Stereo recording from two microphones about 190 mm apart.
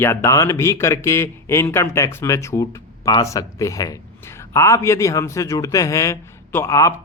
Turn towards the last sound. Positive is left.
turn(degrees=15)  # may be behind; listen again after turning